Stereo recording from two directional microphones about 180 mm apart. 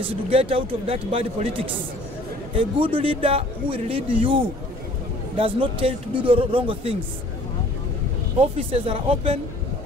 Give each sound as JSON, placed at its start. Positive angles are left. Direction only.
{"t": 0.0, "sound": "a man's voice", "side_deg": -30}
{"t": 8.4, "sound": "a man's voice", "side_deg": -30}